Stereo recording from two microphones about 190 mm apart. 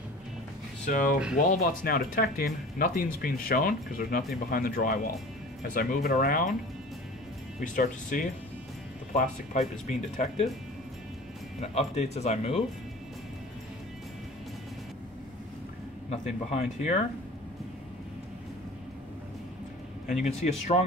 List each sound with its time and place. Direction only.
0.8 s speech: 40° left (ahead or behind)
7.6 s speech: 45° left (ahead or behind)
11.6 s speech: 35° left (ahead or behind)
16.1 s speech: 35° left (ahead or behind)
20.1 s speech: 35° left (ahead or behind)